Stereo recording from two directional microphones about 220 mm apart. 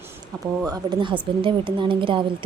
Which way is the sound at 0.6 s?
20° right (ahead or behind).